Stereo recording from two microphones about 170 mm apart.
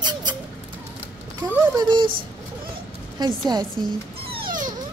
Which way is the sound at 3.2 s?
25° right (ahead or behind).